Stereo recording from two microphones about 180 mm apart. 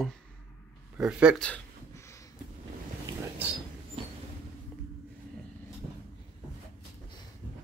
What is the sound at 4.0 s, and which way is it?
Vehicle, 30° right (ahead or behind).